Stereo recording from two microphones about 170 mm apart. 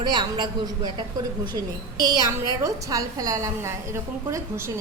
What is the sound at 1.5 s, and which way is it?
A woman's voice, 25° right (ahead or behind).